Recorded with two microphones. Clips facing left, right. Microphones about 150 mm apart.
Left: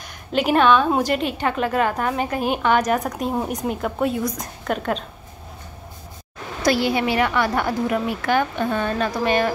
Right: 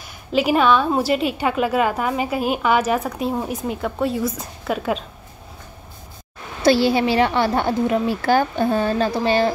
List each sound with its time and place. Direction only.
0.3 s a woman's voice: 5° right (ahead or behind)
6.6 s a woman's voice: 30° right (ahead or behind)